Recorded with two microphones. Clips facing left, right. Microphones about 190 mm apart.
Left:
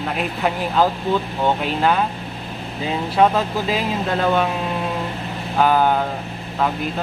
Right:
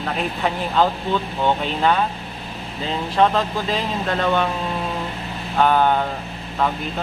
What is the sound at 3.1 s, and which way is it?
Speech, 10° left (ahead or behind).